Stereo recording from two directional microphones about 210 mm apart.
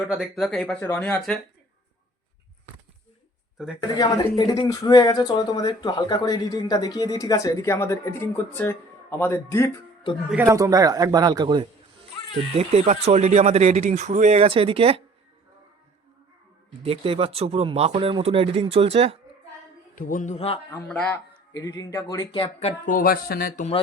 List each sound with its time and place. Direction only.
0.1 s speech: centre (ahead or behind)
3.8 s speech: 15° left (ahead or behind)
10.3 s speech: 15° right (ahead or behind)
16.8 s speech: 25° right (ahead or behind)
20.0 s speech: 40° left (ahead or behind)
20.8 s speech: 5° left (ahead or behind); by 23.6 s 45° left (ahead or behind)